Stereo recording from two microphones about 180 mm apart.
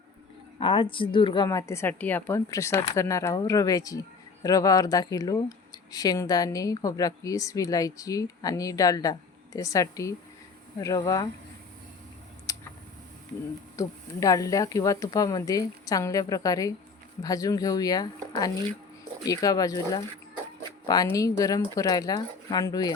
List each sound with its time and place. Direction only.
0.6 s a woman's voice: 30° left (ahead or behind)
12.5 s tick: 20° left (ahead or behind)
13.7 s speech: 20° left (ahead or behind)